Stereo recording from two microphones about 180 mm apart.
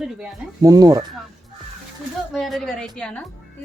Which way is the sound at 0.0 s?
5° right (ahead or behind).